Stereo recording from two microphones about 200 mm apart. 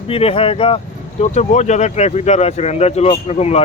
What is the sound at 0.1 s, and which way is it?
Speech, 30° left (ahead or behind).